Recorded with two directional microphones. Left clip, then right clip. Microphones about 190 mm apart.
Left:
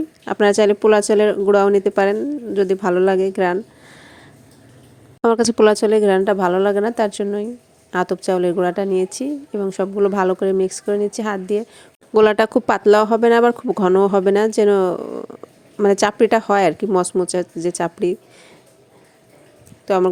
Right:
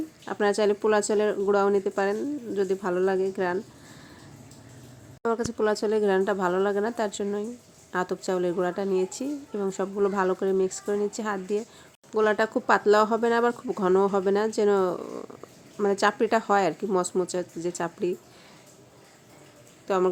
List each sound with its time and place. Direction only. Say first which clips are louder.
0.3 s speech: left 9 dB; 35° left (ahead or behind)
5.2 s a woman's voice: left 12 dB; 45° left (ahead or behind)
12.1 s speech: left 10 dB; 40° left (ahead or behind)
19.9 s a woman's voice: left 8 dB; 30° left (ahead or behind)